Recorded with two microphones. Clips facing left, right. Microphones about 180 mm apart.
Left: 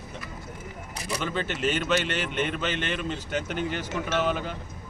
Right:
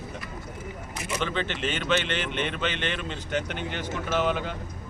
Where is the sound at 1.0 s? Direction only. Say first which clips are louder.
Right 1 dB; 40° left (ahead or behind).